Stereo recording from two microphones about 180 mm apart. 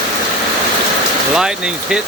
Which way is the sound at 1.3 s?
5° right (ahead or behind).